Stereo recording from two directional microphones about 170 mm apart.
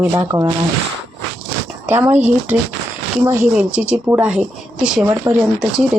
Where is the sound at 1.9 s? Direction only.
10° right (ahead or behind).